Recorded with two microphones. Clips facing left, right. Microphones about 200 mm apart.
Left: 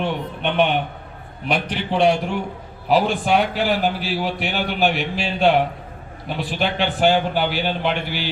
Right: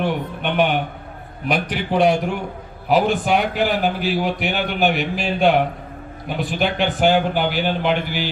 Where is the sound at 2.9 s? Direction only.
45° right (ahead or behind).